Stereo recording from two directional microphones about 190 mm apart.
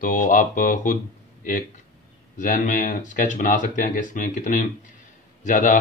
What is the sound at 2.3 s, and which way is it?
A man's voice, 45° left (ahead or behind).